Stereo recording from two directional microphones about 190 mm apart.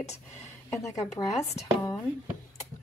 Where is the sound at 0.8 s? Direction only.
20° left (ahead or behind).